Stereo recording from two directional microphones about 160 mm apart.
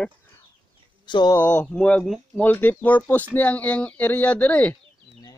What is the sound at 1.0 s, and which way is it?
Speech, 30° left (ahead or behind).